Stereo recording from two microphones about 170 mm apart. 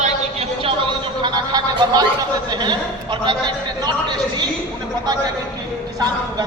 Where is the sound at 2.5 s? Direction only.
25° right (ahead or behind).